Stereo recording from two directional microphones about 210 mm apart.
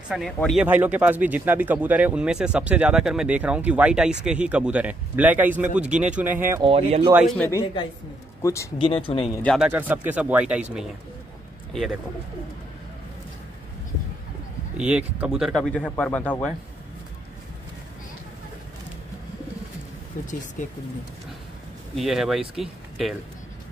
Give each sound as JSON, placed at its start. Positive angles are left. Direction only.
{"t": 0.1, "sound": "a man's voice", "side_deg": 0}
{"t": 6.6, "sound": "speech", "side_deg": -25}
{"t": 7.2, "sound": "speech", "side_deg": 0}
{"t": 7.6, "sound": "speech", "side_deg": 25}
{"t": 9.3, "sound": "speech", "side_deg": 5}
{"t": 9.6, "sound": "a man's voice", "side_deg": -10}
{"t": 11.7, "sound": "speech", "side_deg": 0}
{"t": 14.8, "sound": "speech", "side_deg": -5}
{"t": 20.2, "sound": "speech", "side_deg": 40}
{"t": 21.9, "sound": "speech", "side_deg": 0}